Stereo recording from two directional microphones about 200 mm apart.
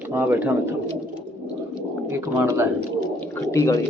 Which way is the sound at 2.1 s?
15° right (ahead or behind).